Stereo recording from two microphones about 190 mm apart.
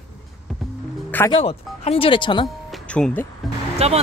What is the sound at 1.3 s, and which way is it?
Speech, 30° left (ahead or behind).